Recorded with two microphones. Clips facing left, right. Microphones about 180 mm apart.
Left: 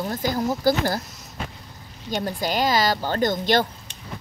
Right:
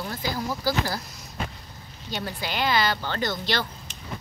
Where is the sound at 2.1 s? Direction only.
45° left (ahead or behind).